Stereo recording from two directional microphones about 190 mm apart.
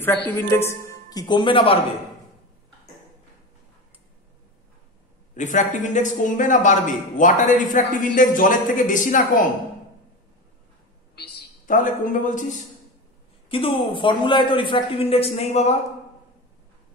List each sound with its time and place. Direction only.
0.0 s speech: 10° left (ahead or behind); by 1.8 s 30° left (ahead or behind)
5.3 s speech: 40° left (ahead or behind)
11.1 s a man's voice: 50° left (ahead or behind)
13.5 s speech: 30° left (ahead or behind)